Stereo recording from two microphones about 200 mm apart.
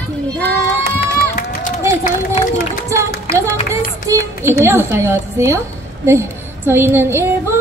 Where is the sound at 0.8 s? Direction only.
50° left (ahead or behind).